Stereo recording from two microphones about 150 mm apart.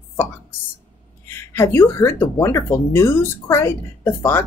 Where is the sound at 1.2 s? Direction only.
15° left (ahead or behind).